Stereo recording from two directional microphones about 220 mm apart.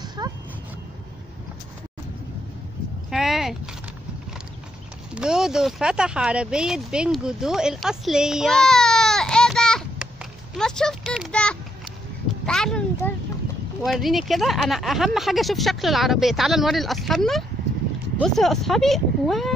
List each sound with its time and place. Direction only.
0.2 s dog: 15° right (ahead or behind)
3.1 s a sound: centre (ahead or behind)
5.1 s speech: 5° right (ahead or behind)